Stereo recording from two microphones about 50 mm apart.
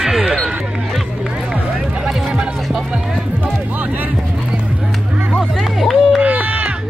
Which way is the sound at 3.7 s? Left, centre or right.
Right.